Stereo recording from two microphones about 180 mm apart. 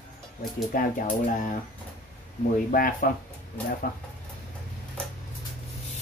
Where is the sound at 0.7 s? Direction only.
50° left (ahead or behind).